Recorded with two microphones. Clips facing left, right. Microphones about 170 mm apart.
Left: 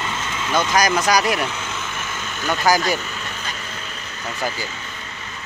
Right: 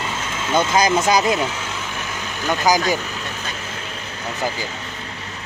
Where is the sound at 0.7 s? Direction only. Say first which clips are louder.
Right 1 dB; 25° right (ahead or behind).